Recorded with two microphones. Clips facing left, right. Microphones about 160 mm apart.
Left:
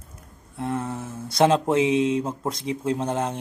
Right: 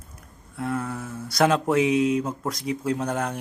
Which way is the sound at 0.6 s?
25° left (ahead or behind).